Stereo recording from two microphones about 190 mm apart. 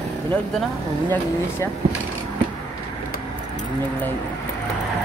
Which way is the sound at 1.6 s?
15° left (ahead or behind).